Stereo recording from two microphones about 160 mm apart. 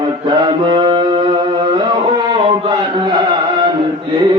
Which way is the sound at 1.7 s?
30° right (ahead or behind).